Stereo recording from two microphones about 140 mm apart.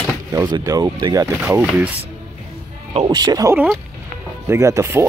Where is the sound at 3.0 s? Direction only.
30° right (ahead or behind).